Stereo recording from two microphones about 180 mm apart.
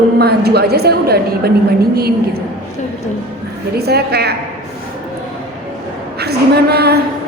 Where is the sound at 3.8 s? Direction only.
65° right (ahead or behind).